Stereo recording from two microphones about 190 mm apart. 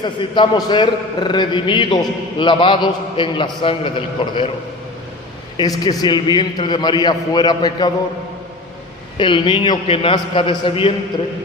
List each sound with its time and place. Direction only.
0.0 s a man's voice: 25° left (ahead or behind)
5.5 s a man's voice: 20° left (ahead or behind)
9.1 s a man's voice: 25° left (ahead or behind)